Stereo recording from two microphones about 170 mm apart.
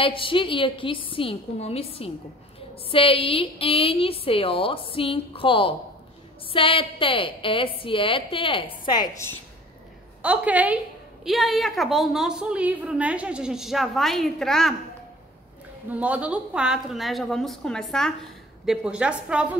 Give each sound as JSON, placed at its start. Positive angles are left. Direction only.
{"t": 0.0, "sound": "a woman's voice", "side_deg": 30}
{"t": 10.2, "sound": "a woman's voice", "side_deg": -10}
{"t": 15.9, "sound": "a woman's voice", "side_deg": -10}